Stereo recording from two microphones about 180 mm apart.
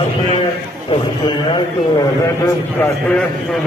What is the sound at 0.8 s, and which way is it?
Speech, 30° left (ahead or behind).